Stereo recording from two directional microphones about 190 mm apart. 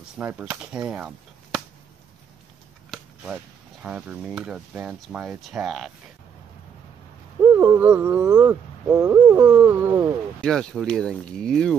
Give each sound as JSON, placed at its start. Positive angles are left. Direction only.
{"t": 0.2, "sound": "speech", "side_deg": -10}
{"t": 2.9, "sound": "a sound", "side_deg": 0}
{"t": 3.8, "sound": "speech", "side_deg": -5}
{"t": 7.5, "sound": "insect", "side_deg": -10}
{"t": 8.9, "sound": "a sound", "side_deg": -20}
{"t": 9.6, "sound": "insect", "side_deg": -10}
{"t": 10.4, "sound": "speech", "side_deg": 5}